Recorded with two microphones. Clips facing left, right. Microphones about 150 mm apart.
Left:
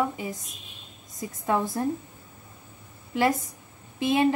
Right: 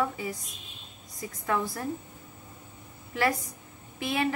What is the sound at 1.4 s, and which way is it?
Speech, 20° left (ahead or behind).